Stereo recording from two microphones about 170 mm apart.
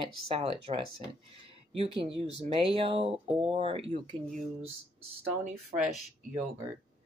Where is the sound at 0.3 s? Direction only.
35° right (ahead or behind).